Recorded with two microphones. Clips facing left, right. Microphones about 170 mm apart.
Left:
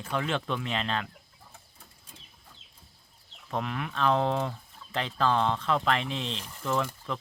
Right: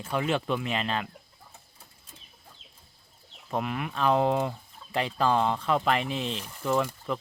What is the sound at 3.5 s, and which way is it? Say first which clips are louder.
Speech: right 2 dB; 5° right (ahead or behind).